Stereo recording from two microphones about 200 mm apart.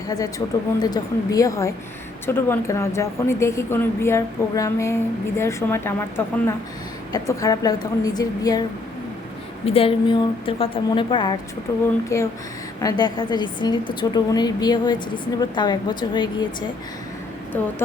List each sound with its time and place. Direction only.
0.1 s a woman's voice: 15° left (ahead or behind)
9.6 s a woman's voice: 30° left (ahead or behind)